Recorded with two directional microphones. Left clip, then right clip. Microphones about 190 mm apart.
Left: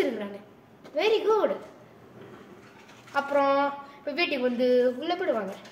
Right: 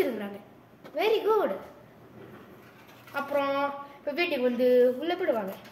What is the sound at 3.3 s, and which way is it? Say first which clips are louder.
A woman's voice: left 4 dB; 5° right (ahead or behind).